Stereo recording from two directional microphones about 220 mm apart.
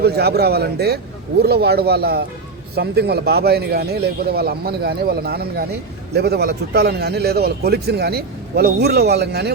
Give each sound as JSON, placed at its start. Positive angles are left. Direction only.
{"t": 0.0, "sound": "a man's voice", "side_deg": -45}